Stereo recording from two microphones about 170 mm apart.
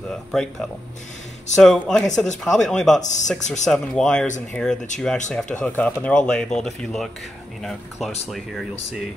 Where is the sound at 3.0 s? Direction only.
45° left (ahead or behind).